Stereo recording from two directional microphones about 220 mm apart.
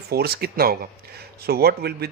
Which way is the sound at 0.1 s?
45° right (ahead or behind).